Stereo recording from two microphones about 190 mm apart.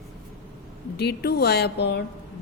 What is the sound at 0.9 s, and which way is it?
A woman's voice, 60° left (ahead or behind).